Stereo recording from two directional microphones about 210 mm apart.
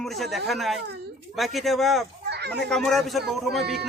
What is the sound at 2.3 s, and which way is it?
Children playing, 50° right (ahead or behind).